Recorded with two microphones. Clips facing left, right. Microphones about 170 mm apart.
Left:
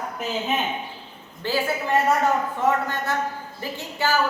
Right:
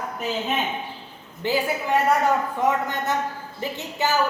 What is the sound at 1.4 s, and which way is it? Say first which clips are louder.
A woman's voice: right 1 dB; 15° right (ahead or behind).